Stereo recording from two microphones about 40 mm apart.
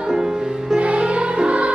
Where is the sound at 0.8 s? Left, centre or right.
Right.